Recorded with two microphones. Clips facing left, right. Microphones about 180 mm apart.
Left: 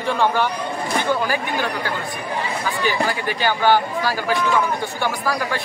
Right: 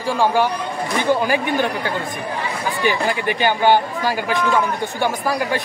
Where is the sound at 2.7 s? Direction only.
20° right (ahead or behind).